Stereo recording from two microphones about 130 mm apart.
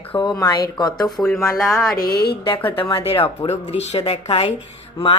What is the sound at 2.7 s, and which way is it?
A woman's voice, 40° left (ahead or behind).